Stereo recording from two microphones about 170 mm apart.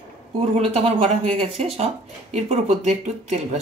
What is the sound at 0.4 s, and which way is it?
Speech, 35° right (ahead or behind).